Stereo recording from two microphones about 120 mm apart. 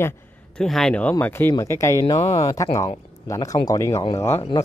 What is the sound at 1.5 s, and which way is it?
Speech, 25° left (ahead or behind).